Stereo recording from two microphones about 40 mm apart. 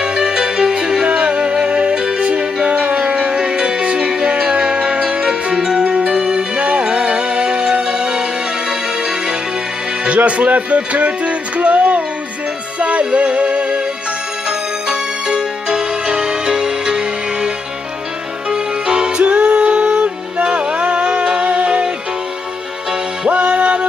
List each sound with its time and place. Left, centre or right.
0.0 s music: centre
5.2 s music: centre
10.0 s music: right
14.9 s music: centre
18.5 s music: centre
19.2 s music: right
23.2 s music: right